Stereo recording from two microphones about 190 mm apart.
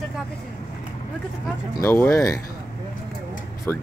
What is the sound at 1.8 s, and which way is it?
Speech, 15° left (ahead or behind).